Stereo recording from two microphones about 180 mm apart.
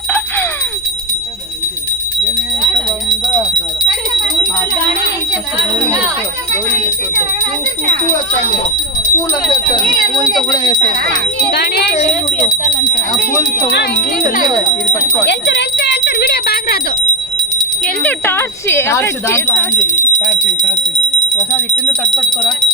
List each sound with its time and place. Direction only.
10.5 s speech: 20° left (ahead or behind)
11.5 s speech: 65° left (ahead or behind)
13.7 s speech: 65° left (ahead or behind)
15.3 s speech: 70° left (ahead or behind)
17.8 s speech: 10° left (ahead or behind)
19.8 s speech: 40° left (ahead or behind)
22.0 s speech: 5° left (ahead or behind)